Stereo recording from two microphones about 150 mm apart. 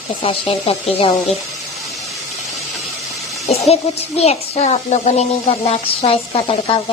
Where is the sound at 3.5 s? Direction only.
45° left (ahead or behind).